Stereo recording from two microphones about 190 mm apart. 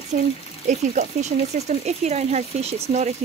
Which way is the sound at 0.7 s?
40° right (ahead or behind).